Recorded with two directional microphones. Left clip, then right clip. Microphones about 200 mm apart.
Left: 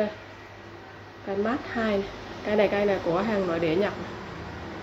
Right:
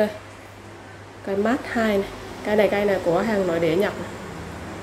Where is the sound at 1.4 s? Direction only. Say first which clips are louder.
Right 5 dB; 15° right (ahead or behind).